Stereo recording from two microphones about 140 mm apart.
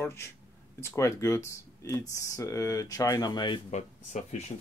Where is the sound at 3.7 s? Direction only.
55° left (ahead or behind).